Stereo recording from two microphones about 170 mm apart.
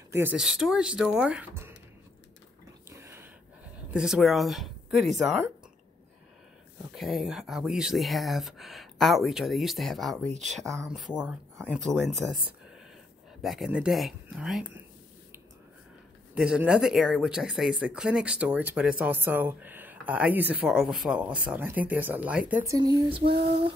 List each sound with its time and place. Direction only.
0.1 s speech: 10° right (ahead or behind)
0.4 s speech: centre (ahead or behind)
2.9 s a sound: 15° right (ahead or behind)
3.9 s speech: 5° right (ahead or behind)
7.0 s speech: centre (ahead or behind)
11.1 s speech: 10° left (ahead or behind)
11.7 s speech: centre (ahead or behind)
13.4 s speech: centre (ahead or behind)
16.3 s speech: 5° right (ahead or behind)
22.7 s speech: 20° right (ahead or behind)